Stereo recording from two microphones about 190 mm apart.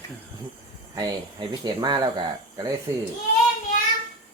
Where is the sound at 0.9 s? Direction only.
20° right (ahead or behind).